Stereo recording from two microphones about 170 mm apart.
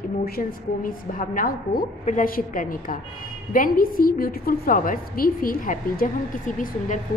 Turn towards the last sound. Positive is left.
turn(degrees=50)  # may be behind; listen again after turning